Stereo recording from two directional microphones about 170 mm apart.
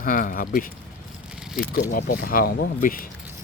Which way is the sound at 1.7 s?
55° left (ahead or behind).